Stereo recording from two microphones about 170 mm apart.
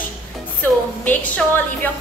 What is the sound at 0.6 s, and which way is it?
A woman's voice, 10° left (ahead or behind).